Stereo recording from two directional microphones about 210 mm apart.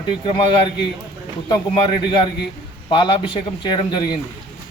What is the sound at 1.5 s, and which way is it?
A man's voice, 25° left (ahead or behind).